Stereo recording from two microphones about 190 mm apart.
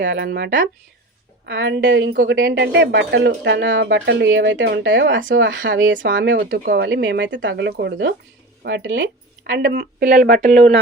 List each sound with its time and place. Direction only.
0.0 s speech: 65° right (ahead or behind)
1.5 s speech: 75° right (ahead or behind)
6.4 s speech: 55° right (ahead or behind)